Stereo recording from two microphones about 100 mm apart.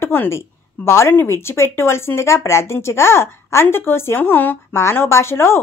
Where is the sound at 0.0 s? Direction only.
25° left (ahead or behind).